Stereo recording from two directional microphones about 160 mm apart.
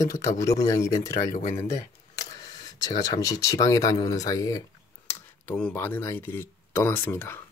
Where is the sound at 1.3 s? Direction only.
45° left (ahead or behind).